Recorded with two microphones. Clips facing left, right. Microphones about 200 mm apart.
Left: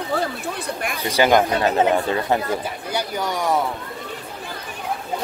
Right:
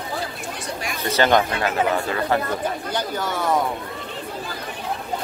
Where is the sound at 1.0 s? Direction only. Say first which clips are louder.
Left 1 dB; 10° left (ahead or behind).